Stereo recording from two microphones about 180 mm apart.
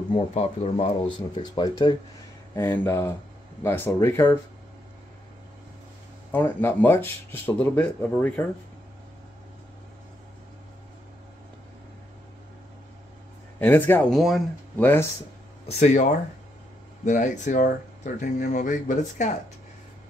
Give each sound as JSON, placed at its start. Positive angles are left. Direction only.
{"t": 0.1, "sound": "speech", "side_deg": 35}
{"t": 2.5, "sound": "speech", "side_deg": 10}
{"t": 6.3, "sound": "speech", "side_deg": 10}
{"t": 13.6, "sound": "speech", "side_deg": 10}
{"t": 15.6, "sound": "speech", "side_deg": 40}